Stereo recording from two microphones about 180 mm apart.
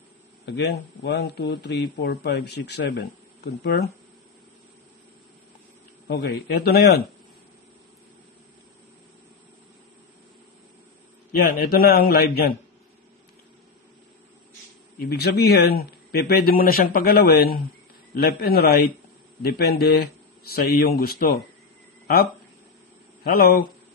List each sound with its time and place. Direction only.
0.5 s speech: 70° left (ahead or behind)
6.0 s speech: 65° left (ahead or behind)
11.3 s speech: 55° left (ahead or behind)
15.0 s speech: 60° left (ahead or behind)
23.2 s speech: 55° left (ahead or behind)